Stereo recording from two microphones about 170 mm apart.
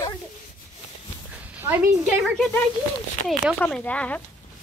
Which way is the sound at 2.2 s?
Centre (ahead or behind).